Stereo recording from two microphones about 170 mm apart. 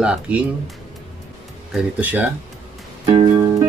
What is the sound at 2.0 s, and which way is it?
Speech, 10° right (ahead or behind).